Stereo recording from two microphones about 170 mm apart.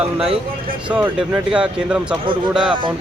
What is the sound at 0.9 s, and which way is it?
Speech, 10° right (ahead or behind).